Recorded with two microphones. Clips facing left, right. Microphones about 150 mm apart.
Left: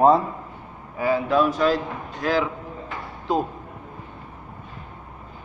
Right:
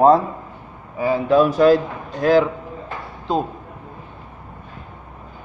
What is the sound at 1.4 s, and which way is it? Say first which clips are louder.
Speech: right 7 dB; 45° right (ahead or behind).